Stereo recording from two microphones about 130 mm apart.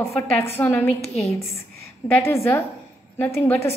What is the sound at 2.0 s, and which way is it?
A woman's voice, 20° left (ahead or behind).